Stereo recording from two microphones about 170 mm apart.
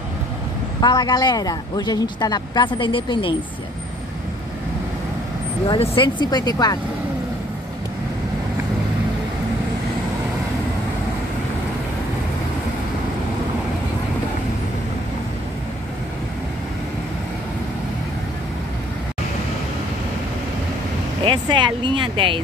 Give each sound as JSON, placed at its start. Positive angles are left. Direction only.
{"t": 0.7, "sound": "speech", "side_deg": 25}
{"t": 5.7, "sound": "speech", "side_deg": 30}
{"t": 21.2, "sound": "speech", "side_deg": -30}